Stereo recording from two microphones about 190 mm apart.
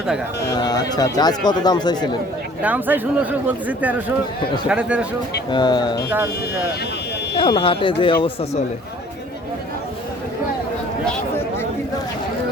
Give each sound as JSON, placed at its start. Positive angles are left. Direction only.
{"t": 0.5, "sound": "speech", "side_deg": 20}
{"t": 2.6, "sound": "speech", "side_deg": -10}
{"t": 5.5, "sound": "speech", "side_deg": 25}
{"t": 7.3, "sound": "speech", "side_deg": 30}